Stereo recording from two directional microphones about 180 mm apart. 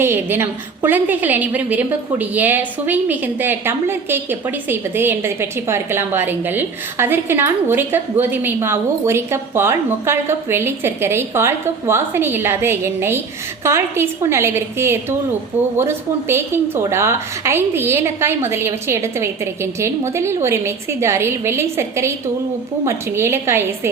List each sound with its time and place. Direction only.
0.0 s a woman's voice: 15° right (ahead or behind)